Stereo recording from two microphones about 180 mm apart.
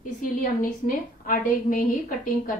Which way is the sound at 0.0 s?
50° left (ahead or behind).